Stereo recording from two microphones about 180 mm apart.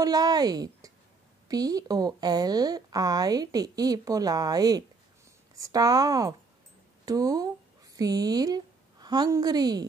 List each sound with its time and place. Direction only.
0.0 s a woman's voice: 20° right (ahead or behind)